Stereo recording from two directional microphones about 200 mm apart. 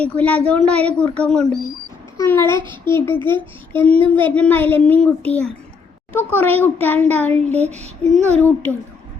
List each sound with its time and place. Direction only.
0.0 s a child's voice: 5° left (ahead or behind)
7.6 s child singing: 35° right (ahead or behind)
8.1 s speech: 5° left (ahead or behind)